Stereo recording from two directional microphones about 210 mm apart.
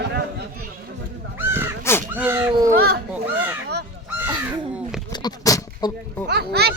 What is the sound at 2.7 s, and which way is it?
Children playing, 50° right (ahead or behind).